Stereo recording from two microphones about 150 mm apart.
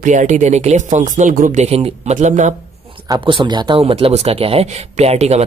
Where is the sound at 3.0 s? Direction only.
30° right (ahead or behind); by 5.4 s 45° right (ahead or behind).